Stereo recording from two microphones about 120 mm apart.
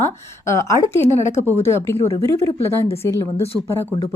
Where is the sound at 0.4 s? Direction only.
25° left (ahead or behind).